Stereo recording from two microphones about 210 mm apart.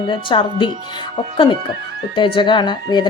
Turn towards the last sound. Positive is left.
turn(degrees=20)  # may be behind; listen again after turning